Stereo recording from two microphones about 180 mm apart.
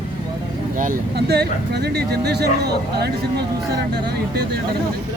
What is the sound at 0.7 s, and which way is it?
Speech, 55° right (ahead or behind).